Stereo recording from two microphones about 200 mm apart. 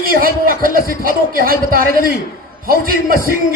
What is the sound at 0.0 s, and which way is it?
A man's voice, 45° right (ahead or behind).